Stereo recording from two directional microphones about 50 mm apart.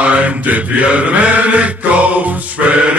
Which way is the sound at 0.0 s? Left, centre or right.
Right.